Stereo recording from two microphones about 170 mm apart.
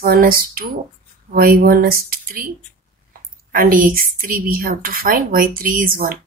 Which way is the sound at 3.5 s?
55° right (ahead or behind).